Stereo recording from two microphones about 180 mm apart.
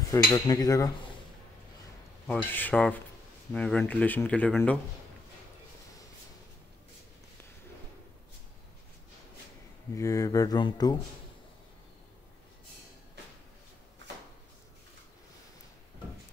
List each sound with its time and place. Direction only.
0.1 s speech: 20° left (ahead or behind)
2.2 s speech: 10° left (ahead or behind)
9.9 s speech: 20° left (ahead or behind)